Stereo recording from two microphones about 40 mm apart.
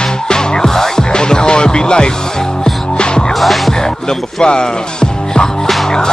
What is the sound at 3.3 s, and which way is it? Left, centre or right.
Music, centre.